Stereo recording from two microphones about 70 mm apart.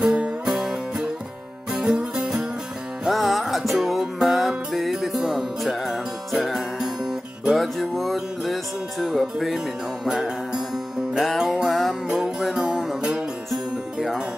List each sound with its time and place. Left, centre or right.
0.0 s music: centre